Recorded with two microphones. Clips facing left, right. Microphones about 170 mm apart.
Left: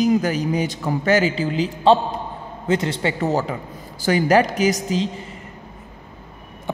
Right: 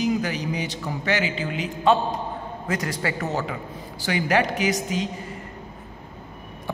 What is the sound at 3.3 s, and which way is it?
A man's voice, 35° left (ahead or behind).